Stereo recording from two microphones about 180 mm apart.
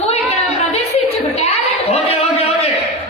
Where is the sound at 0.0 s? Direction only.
35° left (ahead or behind).